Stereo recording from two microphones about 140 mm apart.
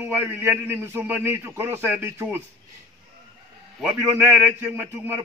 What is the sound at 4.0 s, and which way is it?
A man's voice, 15° right (ahead or behind).